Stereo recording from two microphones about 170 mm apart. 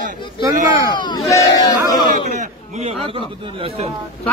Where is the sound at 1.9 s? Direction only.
25° left (ahead or behind).